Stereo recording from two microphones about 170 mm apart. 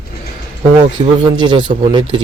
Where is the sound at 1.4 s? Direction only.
30° right (ahead or behind).